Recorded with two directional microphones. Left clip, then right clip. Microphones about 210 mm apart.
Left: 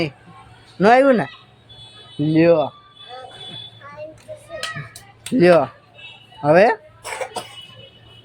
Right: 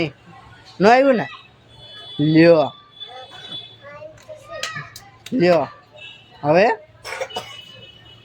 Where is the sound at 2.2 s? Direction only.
5° right (ahead or behind).